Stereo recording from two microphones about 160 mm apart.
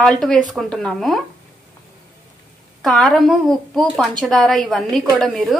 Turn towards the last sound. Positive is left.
turn(degrees=0)  # may be behind; listen again after turning